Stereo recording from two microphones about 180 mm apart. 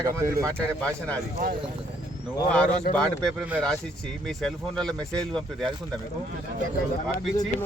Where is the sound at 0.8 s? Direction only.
5° left (ahead or behind).